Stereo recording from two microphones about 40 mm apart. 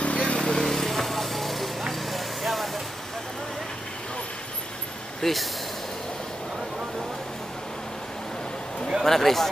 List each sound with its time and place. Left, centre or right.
0.0 s vehicle: left
0.6 s vehicle: centre
5.2 s speech: centre
9.0 s a man's voice: centre